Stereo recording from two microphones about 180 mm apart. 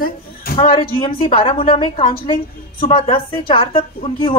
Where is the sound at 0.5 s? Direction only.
30° left (ahead or behind).